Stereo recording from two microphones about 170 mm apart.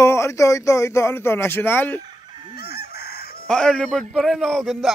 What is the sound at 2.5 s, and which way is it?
Crowing, 70° left (ahead or behind).